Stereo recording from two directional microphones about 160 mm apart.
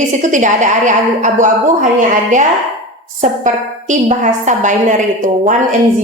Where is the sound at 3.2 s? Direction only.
50° right (ahead or behind).